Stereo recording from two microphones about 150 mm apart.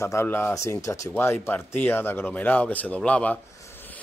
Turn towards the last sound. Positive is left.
turn(degrees=10)  # may be behind; listen again after turning